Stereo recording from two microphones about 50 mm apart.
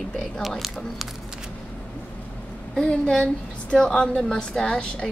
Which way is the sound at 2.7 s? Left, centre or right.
Left.